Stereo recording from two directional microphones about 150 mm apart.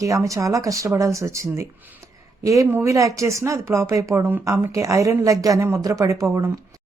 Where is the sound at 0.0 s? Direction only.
20° right (ahead or behind).